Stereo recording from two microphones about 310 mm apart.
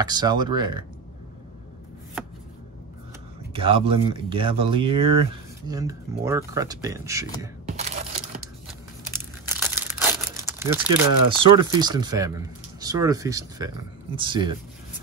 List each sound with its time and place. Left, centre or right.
0.0 s speech: centre
3.5 s speech: centre
7.6 s a sound: right
9.2 s crumpling: centre
11.4 s speech: centre